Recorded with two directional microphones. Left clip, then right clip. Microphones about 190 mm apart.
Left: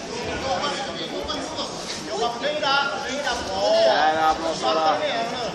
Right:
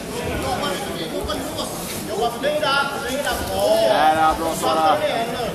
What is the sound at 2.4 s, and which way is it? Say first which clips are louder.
Speech: right 2 dB; 10° left (ahead or behind).